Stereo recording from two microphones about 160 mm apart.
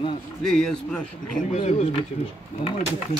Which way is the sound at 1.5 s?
45° left (ahead or behind).